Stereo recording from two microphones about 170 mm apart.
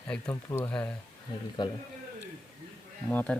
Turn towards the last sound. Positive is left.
turn(degrees=10)  # may be behind; listen again after turning